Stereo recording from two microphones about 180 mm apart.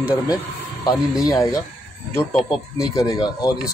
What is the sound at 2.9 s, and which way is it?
Speech, 20° left (ahead or behind).